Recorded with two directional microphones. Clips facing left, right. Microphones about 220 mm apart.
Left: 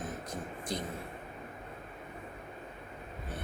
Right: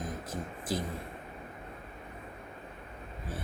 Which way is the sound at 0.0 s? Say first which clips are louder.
Right 1 dB; 5° right (ahead or behind).